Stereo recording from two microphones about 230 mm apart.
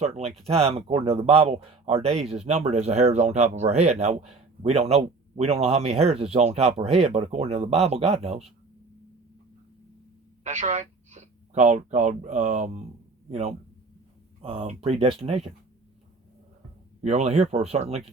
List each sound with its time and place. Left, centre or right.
0.0 s speech: right
10.4 s speech: right
14.4 s speech: right
17.0 s speech: right